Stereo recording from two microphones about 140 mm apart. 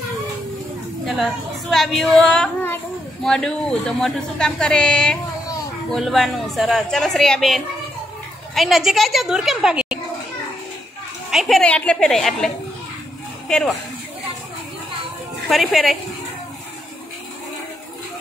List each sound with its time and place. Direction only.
1.0 s speech: centre (ahead or behind)
11.2 s speech: centre (ahead or behind)
13.5 s speech: 5° left (ahead or behind)
15.5 s speech: centre (ahead or behind)